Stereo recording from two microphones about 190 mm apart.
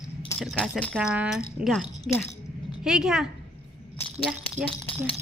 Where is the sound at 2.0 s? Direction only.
15° left (ahead or behind).